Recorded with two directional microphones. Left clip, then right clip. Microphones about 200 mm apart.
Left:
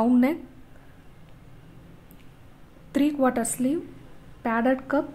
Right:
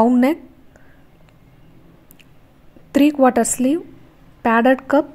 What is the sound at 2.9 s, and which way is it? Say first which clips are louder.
A woman's voice: right 9 dB; 25° right (ahead or behind).